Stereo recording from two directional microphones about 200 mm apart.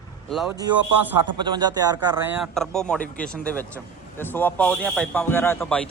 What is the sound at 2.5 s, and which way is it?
Speech, 5° left (ahead or behind).